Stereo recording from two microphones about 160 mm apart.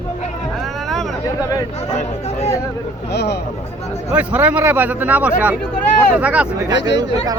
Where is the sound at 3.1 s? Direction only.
90° left.